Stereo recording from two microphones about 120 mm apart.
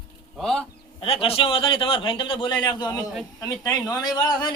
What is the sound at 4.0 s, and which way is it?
Speech, 35° left (ahead or behind).